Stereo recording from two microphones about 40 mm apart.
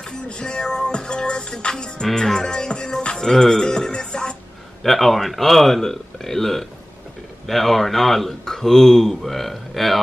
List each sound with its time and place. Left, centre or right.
0.0 s music: left
4.8 s speech: centre